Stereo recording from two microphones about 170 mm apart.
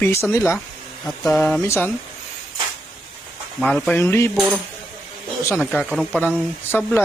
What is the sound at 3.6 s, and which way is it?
Speech, 5° left (ahead or behind).